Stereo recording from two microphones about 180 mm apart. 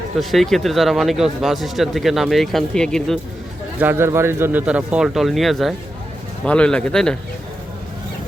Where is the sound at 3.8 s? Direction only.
10° right (ahead or behind); by 7.2 s 5° left (ahead or behind).